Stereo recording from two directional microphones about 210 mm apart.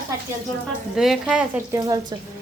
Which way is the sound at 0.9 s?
Centre (ahead or behind).